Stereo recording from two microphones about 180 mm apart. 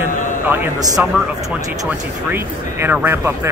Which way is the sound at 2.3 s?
10° right (ahead or behind).